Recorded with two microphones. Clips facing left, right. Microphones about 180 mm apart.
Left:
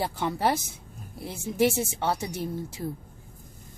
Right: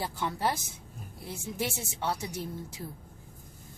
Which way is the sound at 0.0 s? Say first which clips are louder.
Left 5 dB; 75° left (ahead or behind).